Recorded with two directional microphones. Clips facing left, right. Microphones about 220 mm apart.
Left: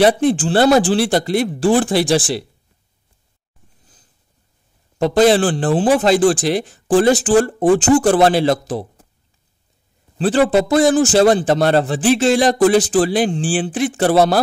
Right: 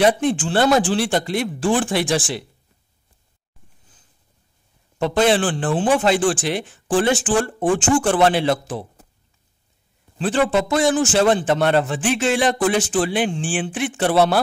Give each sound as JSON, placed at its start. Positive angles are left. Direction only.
{"t": 0.0, "sound": "a man's voice", "side_deg": 35}
{"t": 4.9, "sound": "a man's voice", "side_deg": 35}
{"t": 10.1, "sound": "a man's voice", "side_deg": 35}